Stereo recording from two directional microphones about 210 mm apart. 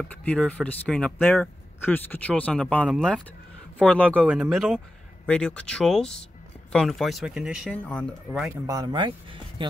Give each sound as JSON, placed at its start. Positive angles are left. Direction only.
{"t": 0.1, "sound": "speech", "side_deg": 5}
{"t": 8.3, "sound": "speech", "side_deg": -5}
{"t": 8.6, "sound": "speech", "side_deg": -20}